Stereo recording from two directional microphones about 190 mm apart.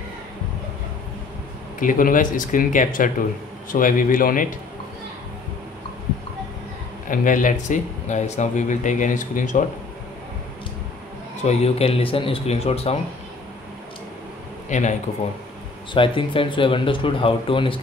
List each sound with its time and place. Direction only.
1.8 s speech: 45° left (ahead or behind)
7.1 s speech: 45° left (ahead or behind)
11.4 s speech: 35° left (ahead or behind)
14.7 s speech: 40° left (ahead or behind)
15.9 s speech: 25° left (ahead or behind)